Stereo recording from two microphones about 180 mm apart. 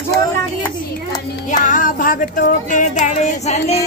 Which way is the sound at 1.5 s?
45° left (ahead or behind).